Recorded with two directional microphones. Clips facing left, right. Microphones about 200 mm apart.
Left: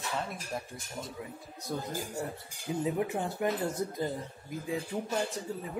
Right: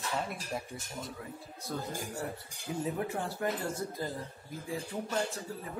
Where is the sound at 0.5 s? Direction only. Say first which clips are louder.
Even; centre (ahead or behind).